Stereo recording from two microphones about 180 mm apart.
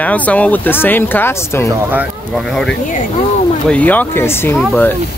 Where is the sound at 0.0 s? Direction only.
10° left (ahead or behind).